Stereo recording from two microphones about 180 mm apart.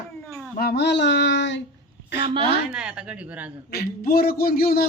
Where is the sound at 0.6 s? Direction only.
60° left (ahead or behind).